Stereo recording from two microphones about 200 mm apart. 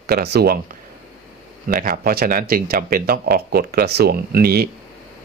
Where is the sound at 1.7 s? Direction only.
45° right (ahead or behind).